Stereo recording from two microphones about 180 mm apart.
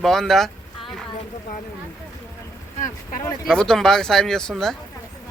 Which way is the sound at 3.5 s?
Centre (ahead or behind).